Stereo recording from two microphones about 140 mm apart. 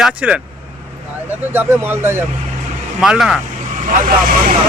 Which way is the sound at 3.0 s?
5° right (ahead or behind).